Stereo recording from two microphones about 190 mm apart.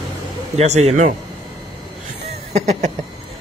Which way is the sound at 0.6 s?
35° right (ahead or behind).